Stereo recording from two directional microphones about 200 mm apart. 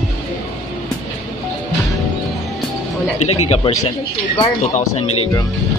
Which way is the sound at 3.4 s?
30° left (ahead or behind).